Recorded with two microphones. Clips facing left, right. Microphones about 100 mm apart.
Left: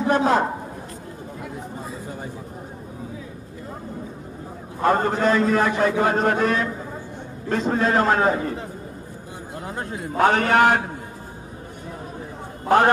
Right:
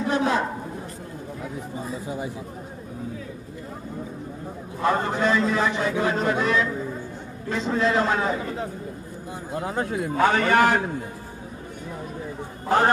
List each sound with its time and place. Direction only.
0.1 s a man's voice: 50° left (ahead or behind)
4.8 s a man's voice: 45° left (ahead or behind)
10.1 s a man's voice: 55° left (ahead or behind)
12.6 s a man's voice: 60° left (ahead or behind)